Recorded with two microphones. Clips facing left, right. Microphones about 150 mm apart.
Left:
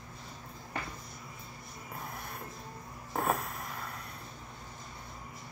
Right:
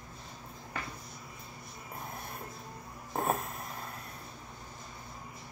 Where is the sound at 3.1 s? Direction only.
20° right (ahead or behind).